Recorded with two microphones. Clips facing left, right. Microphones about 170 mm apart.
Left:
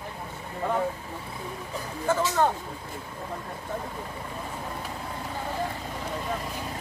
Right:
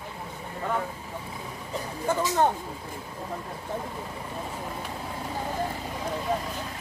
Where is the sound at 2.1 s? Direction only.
15° right (ahead or behind).